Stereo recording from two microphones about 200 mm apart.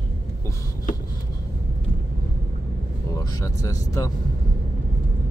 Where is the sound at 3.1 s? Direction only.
15° left (ahead or behind).